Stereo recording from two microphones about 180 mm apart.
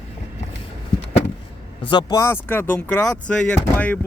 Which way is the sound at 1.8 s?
25° left (ahead or behind).